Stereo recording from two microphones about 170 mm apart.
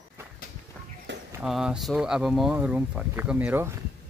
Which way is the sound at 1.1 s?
90° right.